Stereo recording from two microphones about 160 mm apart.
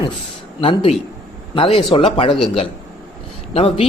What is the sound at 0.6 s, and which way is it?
Speech, 35° left (ahead or behind).